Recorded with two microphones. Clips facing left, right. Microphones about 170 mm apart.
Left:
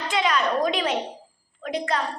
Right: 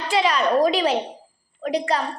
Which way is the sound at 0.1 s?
35° right (ahead or behind).